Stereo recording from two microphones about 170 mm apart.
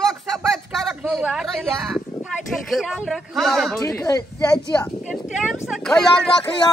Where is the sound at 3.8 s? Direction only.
20° left (ahead or behind).